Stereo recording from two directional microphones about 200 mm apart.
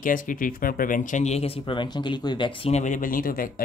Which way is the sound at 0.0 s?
40° left (ahead or behind).